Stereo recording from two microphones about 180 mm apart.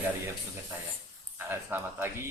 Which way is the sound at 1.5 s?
15° right (ahead or behind).